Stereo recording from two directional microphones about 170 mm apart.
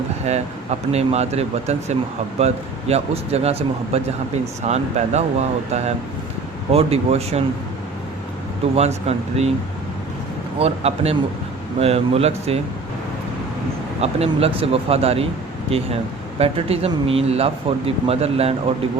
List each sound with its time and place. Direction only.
0.9 s speech: 40° right (ahead or behind)
8.7 s speech: 40° right (ahead or behind)
10.6 s speech: 35° right (ahead or behind)
14.0 s speech: 35° right (ahead or behind)